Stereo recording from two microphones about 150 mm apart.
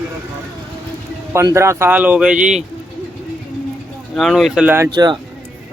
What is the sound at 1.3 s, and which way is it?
Speech, 20° right (ahead or behind).